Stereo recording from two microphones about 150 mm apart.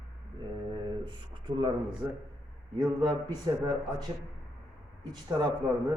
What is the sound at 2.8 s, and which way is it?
A man's voice, 25° right (ahead or behind).